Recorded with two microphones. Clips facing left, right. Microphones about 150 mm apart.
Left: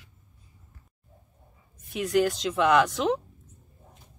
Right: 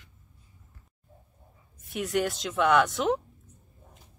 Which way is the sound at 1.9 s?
Centre (ahead or behind).